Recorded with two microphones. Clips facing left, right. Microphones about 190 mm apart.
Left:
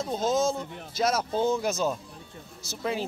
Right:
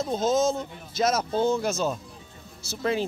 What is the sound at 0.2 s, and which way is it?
Speech, 10° left (ahead or behind).